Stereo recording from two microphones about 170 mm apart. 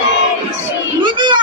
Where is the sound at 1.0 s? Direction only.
25° right (ahead or behind).